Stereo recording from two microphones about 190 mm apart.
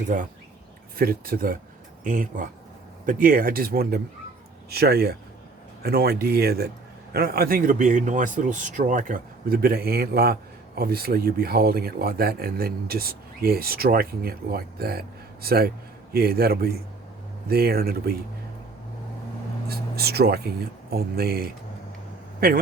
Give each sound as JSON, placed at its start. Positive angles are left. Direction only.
{"t": 0.1, "sound": "speech", "side_deg": -45}
{"t": 19.6, "sound": "speech", "side_deg": -55}